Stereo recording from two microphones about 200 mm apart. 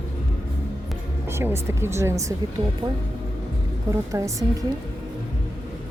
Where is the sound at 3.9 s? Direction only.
15° right (ahead or behind).